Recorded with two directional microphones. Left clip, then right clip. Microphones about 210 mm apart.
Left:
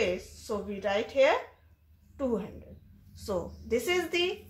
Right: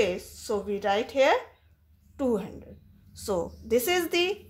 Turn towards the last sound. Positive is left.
turn(degrees=-50)  # may be behind; listen again after turning